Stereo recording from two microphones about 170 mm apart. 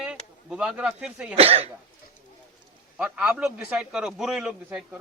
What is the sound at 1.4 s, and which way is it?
Speech, 35° right (ahead or behind).